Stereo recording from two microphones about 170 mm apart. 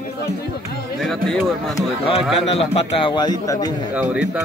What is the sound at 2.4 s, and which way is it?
A man's voice, 35° left (ahead or behind).